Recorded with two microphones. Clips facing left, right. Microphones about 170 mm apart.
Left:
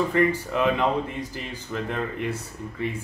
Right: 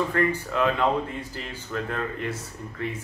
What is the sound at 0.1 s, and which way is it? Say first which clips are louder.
Speech: left 3 dB; 15° left (ahead or behind).